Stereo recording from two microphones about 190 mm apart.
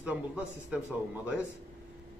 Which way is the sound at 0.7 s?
5° right (ahead or behind).